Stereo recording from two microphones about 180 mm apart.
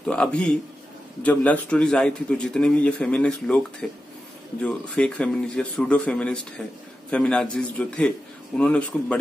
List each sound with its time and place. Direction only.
0.0 s a man's voice: 5° left (ahead or behind)